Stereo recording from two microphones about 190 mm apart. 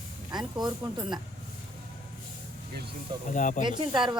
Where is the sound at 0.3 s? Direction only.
20° right (ahead or behind).